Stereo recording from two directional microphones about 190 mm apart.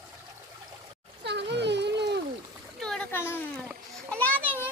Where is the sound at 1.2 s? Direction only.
65° right (ahead or behind).